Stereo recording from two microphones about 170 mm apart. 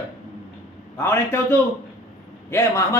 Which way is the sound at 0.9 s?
15° left (ahead or behind).